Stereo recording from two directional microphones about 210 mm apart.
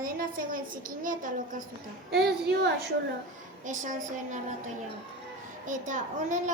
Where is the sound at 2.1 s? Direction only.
50° right (ahead or behind).